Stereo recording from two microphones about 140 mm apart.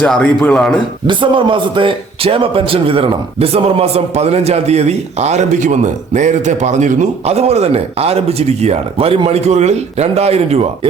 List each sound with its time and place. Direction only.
0.0 s a man's voice: 5° left (ahead or behind)
1.0 s a man's voice: 35° right (ahead or behind)